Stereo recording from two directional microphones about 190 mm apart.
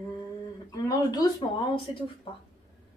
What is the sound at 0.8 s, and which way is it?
Speech, 20° left (ahead or behind).